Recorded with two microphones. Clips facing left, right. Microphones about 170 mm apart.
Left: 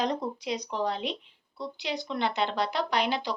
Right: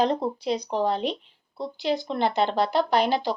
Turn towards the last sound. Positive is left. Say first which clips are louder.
# right 6 dB
turn(degrees=-40)  # may be behind; listen again after turning